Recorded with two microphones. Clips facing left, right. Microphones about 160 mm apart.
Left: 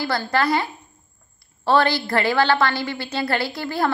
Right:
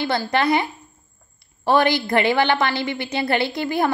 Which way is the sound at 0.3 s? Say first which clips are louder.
Right 1 dB; 20° right (ahead or behind).